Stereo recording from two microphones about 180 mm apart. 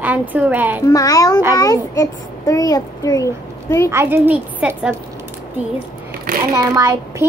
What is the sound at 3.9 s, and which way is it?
Speech, 10° right (ahead or behind).